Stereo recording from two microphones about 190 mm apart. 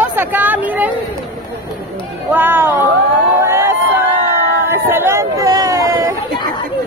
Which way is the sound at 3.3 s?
15° right (ahead or behind).